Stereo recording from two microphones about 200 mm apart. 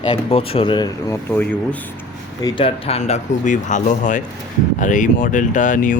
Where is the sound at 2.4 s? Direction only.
25° left (ahead or behind).